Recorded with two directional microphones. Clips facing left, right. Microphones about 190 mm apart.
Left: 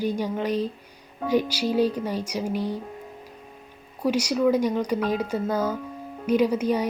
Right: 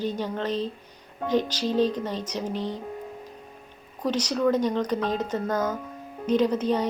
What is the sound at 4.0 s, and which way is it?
Speech, 10° left (ahead or behind).